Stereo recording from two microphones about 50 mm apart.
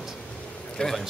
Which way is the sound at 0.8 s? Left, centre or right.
Centre.